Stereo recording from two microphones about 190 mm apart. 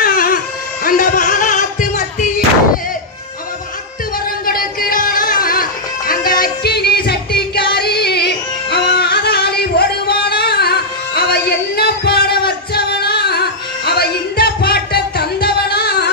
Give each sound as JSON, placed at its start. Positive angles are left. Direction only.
{"t": 0.0, "sound": "baby cry", "side_deg": 50}
{"t": 0.8, "sound": "music", "side_deg": 45}
{"t": 4.5, "sound": "music", "side_deg": 50}